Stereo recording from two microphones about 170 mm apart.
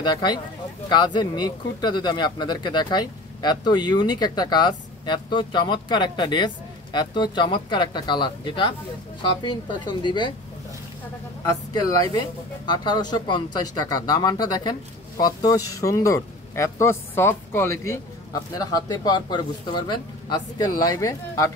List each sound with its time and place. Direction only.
0.0 s speech: 25° left (ahead or behind)
11.4 s speech: 20° left (ahead or behind)